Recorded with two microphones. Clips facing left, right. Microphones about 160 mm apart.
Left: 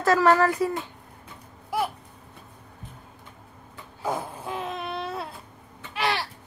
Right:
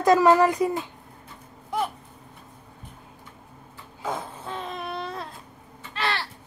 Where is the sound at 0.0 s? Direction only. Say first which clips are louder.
Right 2 dB; 15° right (ahead or behind).